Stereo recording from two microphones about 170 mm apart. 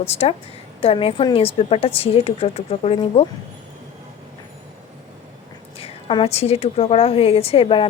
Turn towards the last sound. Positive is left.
turn(degrees=30)  # may be behind; listen again after turning